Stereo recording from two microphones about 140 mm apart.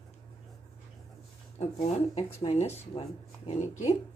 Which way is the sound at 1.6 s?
50° left (ahead or behind).